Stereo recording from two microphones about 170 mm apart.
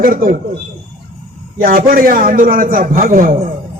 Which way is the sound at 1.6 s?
60° right (ahead or behind).